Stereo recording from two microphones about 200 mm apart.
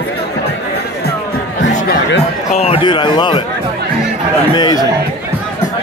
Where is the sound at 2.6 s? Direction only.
25° left (ahead or behind).